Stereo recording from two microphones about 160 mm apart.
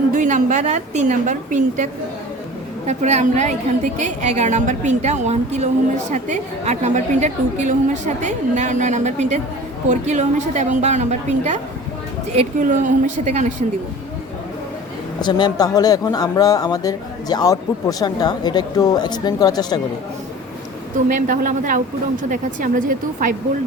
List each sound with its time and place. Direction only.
0.1 s a woman's voice: 50° right (ahead or behind)
15.2 s speech: 25° left (ahead or behind)
21.1 s speech: 55° right (ahead or behind)